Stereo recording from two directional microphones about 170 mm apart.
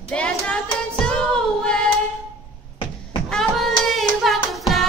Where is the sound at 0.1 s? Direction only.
5° left (ahead or behind).